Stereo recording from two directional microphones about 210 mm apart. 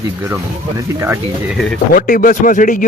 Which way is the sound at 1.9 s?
40° left (ahead or behind).